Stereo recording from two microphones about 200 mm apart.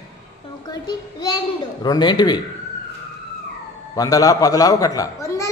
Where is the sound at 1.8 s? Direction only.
20° left (ahead or behind).